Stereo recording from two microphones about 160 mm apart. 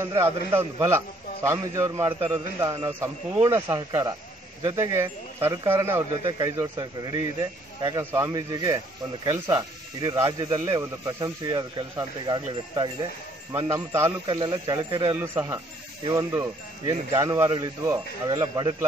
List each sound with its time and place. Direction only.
0.0 s a man's voice: 15° right (ahead or behind)
8.3 s speech: 25° right (ahead or behind)
13.5 s speech: 20° right (ahead or behind)
14.2 s a man's voice: 30° right (ahead or behind)